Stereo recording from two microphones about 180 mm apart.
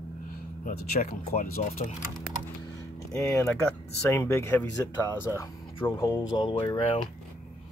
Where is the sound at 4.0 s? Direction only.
15° left (ahead or behind).